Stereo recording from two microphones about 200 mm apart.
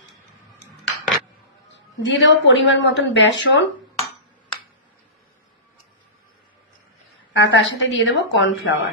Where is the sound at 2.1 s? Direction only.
70° left (ahead or behind).